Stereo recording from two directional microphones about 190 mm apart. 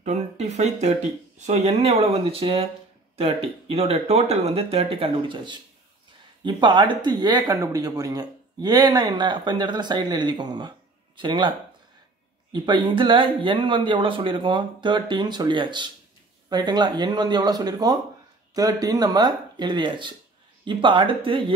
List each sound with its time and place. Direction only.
0.0 s speech: 40° right (ahead or behind)
12.5 s speech: 25° right (ahead or behind)